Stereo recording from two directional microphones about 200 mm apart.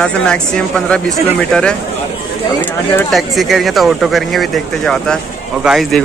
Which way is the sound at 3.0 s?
Centre (ahead or behind).